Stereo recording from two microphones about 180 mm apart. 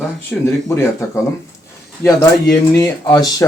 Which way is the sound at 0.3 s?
5° left (ahead or behind).